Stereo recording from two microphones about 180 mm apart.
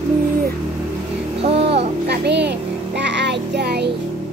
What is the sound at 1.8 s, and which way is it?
Child singing, 70° right (ahead or behind).